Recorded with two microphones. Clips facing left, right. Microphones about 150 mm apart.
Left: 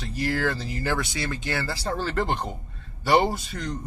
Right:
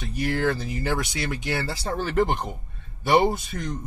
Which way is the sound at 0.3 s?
20° right (ahead or behind).